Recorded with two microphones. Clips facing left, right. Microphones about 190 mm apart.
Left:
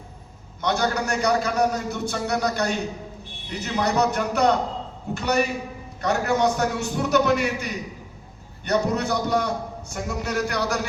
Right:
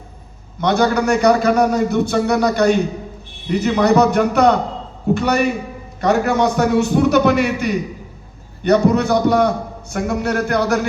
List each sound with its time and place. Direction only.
0.6 s a man's voice: 90° right; by 7.8 s 70° right (ahead or behind)
8.6 s a man's voice: 85° right; by 10.8 s 55° right (ahead or behind)